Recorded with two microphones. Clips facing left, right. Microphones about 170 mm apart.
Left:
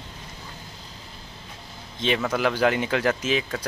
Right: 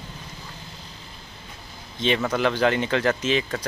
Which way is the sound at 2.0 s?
5° left (ahead or behind).